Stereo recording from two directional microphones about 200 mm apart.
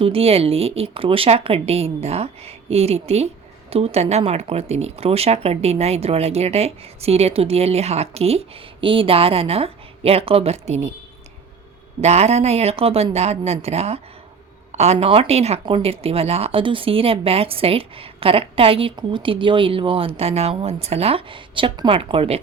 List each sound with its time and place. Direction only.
0.0 s speech: 30° right (ahead or behind)
11.9 s speech: 35° right (ahead or behind)